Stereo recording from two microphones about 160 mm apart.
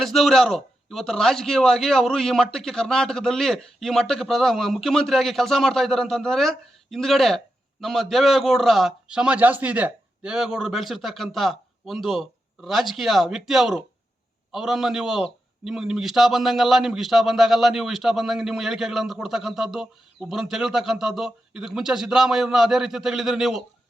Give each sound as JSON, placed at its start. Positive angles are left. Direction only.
{"t": 0.0, "sound": "a man's voice", "side_deg": 0}